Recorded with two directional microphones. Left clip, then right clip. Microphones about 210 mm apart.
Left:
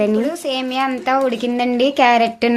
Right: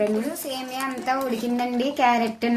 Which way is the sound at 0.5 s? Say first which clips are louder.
Left 10 dB; 45° left (ahead or behind).